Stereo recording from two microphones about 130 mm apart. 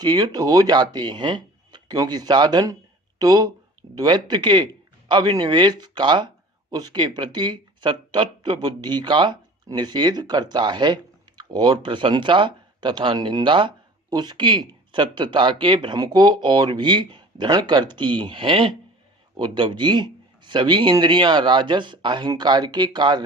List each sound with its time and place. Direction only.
0.0 s a man's voice: 35° right (ahead or behind)